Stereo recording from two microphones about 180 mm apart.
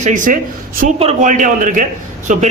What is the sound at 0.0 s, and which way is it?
A man's voice, 45° right (ahead or behind).